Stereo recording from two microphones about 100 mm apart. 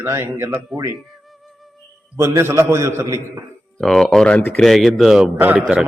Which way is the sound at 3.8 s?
5° left (ahead or behind).